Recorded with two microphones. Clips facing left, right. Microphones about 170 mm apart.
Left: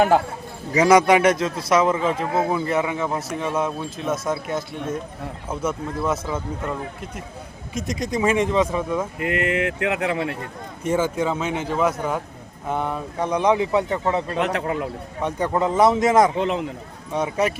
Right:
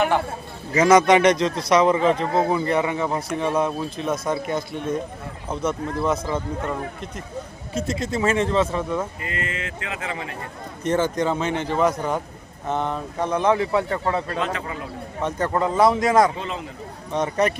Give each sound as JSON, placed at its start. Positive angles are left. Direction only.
{"t": 0.7, "sound": "a man's voice", "side_deg": 10}
{"t": 7.7, "sound": "speech", "side_deg": 15}
{"t": 9.1, "sound": "speech", "side_deg": 65}
{"t": 10.8, "sound": "a man's voice", "side_deg": 5}
{"t": 14.3, "sound": "speech", "side_deg": 65}
{"t": 15.2, "sound": "a man's voice", "side_deg": 15}
{"t": 16.4, "sound": "speech", "side_deg": 65}
{"t": 17.1, "sound": "speech", "side_deg": 10}